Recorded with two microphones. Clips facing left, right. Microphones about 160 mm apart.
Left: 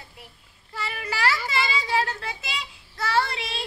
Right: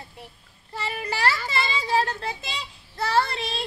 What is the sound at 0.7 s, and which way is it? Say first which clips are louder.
Speech: right 2 dB; 35° right (ahead or behind).